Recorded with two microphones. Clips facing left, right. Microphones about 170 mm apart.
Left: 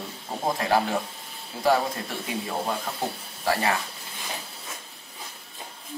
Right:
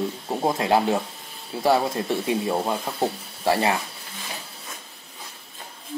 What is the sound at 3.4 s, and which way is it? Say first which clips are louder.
Speech: right 4 dB; 25° right (ahead or behind).